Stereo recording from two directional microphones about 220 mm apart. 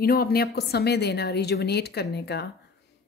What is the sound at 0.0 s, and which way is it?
A woman's voice, 45° left (ahead or behind).